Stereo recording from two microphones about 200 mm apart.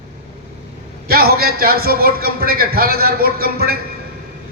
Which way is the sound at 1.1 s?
50° right (ahead or behind).